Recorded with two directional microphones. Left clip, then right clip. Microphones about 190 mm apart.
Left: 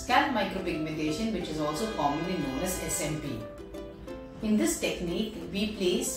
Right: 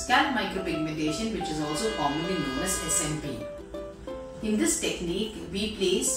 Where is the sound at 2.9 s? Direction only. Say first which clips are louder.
Right 2 dB; centre (ahead or behind).